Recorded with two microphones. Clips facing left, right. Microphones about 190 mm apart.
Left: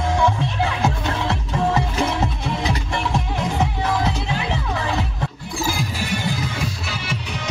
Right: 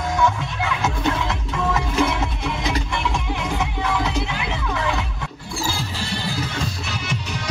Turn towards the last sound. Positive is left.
turn(degrees=15)  # may be behind; listen again after turning